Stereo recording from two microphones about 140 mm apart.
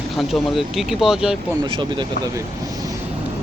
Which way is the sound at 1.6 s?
35° right (ahead or behind).